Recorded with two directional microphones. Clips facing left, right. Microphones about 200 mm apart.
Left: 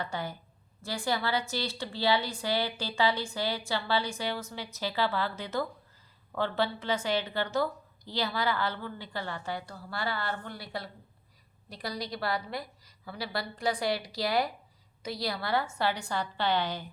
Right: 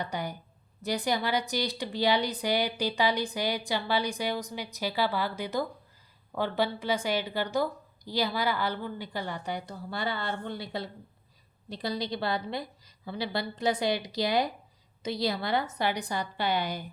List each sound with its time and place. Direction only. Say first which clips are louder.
0.0 s a woman's voice: right 2 dB; 15° right (ahead or behind)